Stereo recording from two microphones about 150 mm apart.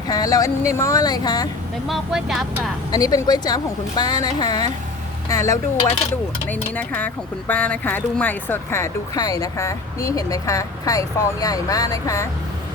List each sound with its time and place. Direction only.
0.1 s speech: 25° left (ahead or behind)
1.9 s speech: centre (ahead or behind)
2.9 s speech: 25° left (ahead or behind)
6.5 s speech: 10° left (ahead or behind)